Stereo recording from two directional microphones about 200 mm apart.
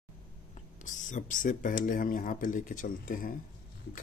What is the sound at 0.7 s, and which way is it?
Speech, 40° left (ahead or behind).